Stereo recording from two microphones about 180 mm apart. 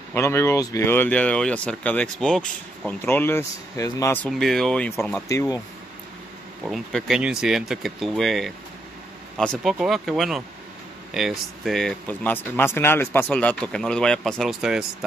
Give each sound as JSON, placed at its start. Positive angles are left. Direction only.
{"t": 0.1, "sound": "speech", "side_deg": 15}
{"t": 4.3, "sound": "speech", "side_deg": 0}
{"t": 5.3, "sound": "speech", "side_deg": 15}
{"t": 6.6, "sound": "speech", "side_deg": 0}